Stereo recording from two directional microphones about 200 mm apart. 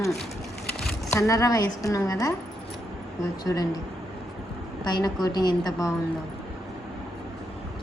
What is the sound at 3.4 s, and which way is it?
Speech, 20° left (ahead or behind).